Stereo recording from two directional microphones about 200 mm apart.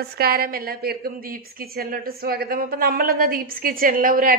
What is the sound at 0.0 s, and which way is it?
A woman's voice, 50° right (ahead or behind).